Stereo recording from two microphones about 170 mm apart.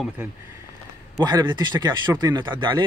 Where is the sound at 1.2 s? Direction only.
25° right (ahead or behind).